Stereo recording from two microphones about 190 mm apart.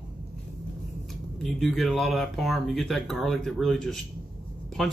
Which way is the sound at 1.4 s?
Centre (ahead or behind).